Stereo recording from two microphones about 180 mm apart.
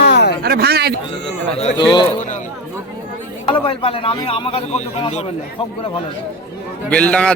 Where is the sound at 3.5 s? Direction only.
30° left (ahead or behind).